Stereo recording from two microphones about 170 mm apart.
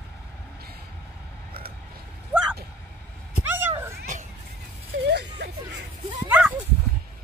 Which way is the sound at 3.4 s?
15° right (ahead or behind).